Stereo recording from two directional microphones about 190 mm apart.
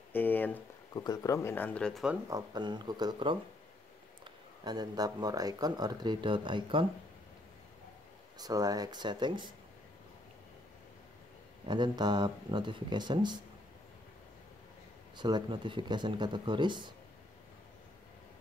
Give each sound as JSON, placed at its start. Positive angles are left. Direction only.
{"t": 0.1, "sound": "a sound", "side_deg": 10}
{"t": 0.9, "sound": "speech", "side_deg": 20}
{"t": 2.2, "sound": "speech", "side_deg": -20}
{"t": 8.4, "sound": "speech", "side_deg": -20}
{"t": 11.6, "sound": "speech", "side_deg": -25}
{"t": 15.1, "sound": "speech", "side_deg": -20}